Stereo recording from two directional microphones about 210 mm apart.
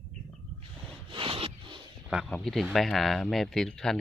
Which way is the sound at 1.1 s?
25° right (ahead or behind).